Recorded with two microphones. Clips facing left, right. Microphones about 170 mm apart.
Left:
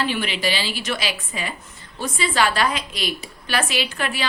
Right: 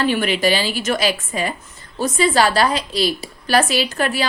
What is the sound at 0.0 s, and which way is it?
A woman's voice, 45° right (ahead or behind).